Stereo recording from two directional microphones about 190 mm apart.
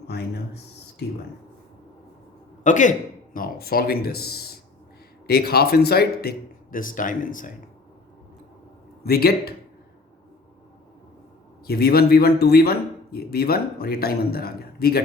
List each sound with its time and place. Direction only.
0.1 s speech: 60° left (ahead or behind)
2.6 s a man's voice: 40° left (ahead or behind)
9.0 s a man's voice: 55° left (ahead or behind)
11.6 s a man's voice: 55° left (ahead or behind)